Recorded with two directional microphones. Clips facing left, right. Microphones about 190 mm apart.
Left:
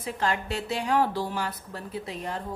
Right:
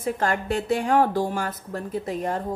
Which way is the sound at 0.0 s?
50° right (ahead or behind).